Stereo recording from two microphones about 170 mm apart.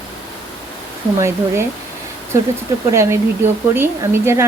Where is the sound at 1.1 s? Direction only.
15° right (ahead or behind).